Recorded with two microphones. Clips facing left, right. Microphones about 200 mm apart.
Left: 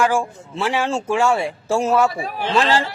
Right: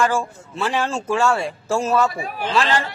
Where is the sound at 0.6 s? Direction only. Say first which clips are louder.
Left 2 dB; 10° left (ahead or behind).